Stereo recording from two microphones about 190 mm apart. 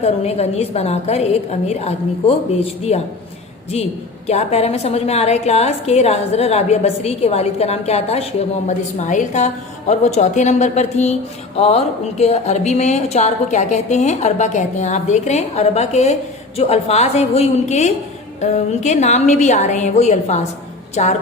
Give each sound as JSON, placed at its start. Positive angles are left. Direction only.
{"t": 0.0, "sound": "a woman's voice", "side_deg": 35}
{"t": 4.3, "sound": "a woman's voice", "side_deg": 35}